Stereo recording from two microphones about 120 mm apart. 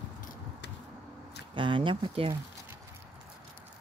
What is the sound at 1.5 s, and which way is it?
Speech, 45° right (ahead or behind).